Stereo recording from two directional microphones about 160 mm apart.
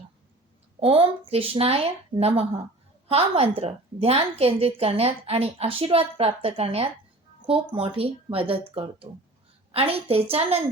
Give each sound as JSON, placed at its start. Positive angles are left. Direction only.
{"t": 0.8, "sound": "a woman's voice", "side_deg": -35}